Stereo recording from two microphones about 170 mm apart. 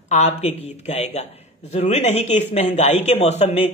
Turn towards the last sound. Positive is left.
turn(degrees=40)  # may be behind; listen again after turning